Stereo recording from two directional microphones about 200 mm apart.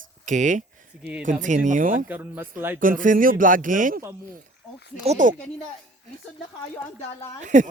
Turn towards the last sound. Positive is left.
turn(degrees=-40)  # may be behind; listen again after turning